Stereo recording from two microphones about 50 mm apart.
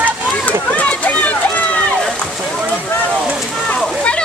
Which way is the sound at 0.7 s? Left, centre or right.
Left.